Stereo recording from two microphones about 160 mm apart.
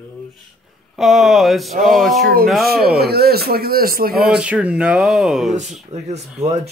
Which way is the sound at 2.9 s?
80° right.